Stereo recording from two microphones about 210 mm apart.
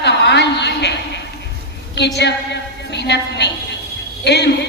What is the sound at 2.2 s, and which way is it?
A man's voice, 55° left (ahead or behind).